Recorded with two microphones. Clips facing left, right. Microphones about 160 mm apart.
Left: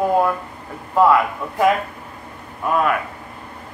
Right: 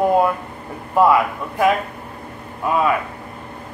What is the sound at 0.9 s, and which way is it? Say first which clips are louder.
A man's voice: even; 5° right (ahead or behind).